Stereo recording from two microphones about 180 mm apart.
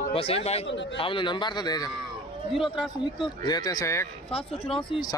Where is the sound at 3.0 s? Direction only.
25° left (ahead or behind).